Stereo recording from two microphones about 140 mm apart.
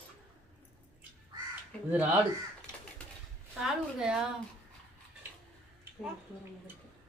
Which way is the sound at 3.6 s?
5° right (ahead or behind).